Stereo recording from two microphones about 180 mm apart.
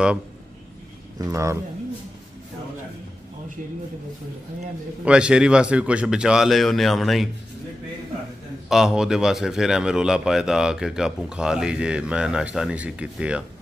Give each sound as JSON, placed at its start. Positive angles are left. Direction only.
{"t": 1.1, "sound": "speech", "side_deg": -15}
{"t": 5.0, "sound": "a man's voice", "side_deg": -5}
{"t": 8.6, "sound": "a man's voice", "side_deg": 0}